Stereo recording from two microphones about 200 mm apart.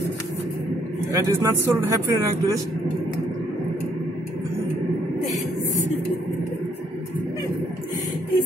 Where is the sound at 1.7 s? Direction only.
15° right (ahead or behind).